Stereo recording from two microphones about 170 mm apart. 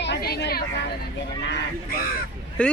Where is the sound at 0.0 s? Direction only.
80° left.